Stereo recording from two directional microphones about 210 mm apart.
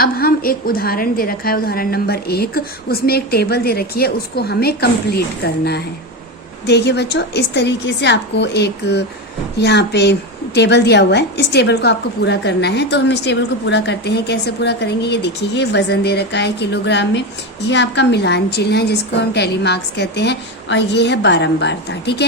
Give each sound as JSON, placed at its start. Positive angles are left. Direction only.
{"t": 0.0, "sound": "a woman's voice", "side_deg": 45}